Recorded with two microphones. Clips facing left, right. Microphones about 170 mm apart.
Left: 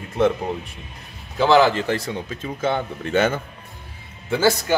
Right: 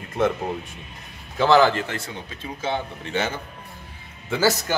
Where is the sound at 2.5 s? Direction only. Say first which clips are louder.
Left 4 dB; 50° left (ahead or behind).